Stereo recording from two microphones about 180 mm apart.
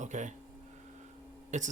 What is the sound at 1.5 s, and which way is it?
Speech, 40° right (ahead or behind).